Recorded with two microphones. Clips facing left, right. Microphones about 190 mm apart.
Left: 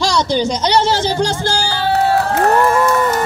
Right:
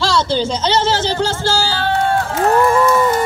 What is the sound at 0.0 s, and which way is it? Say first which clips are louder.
Music: left 1 dB; 15° left (ahead or behind).